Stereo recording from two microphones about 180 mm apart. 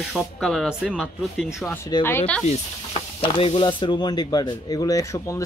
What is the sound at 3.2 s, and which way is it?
Speech, 30° left (ahead or behind).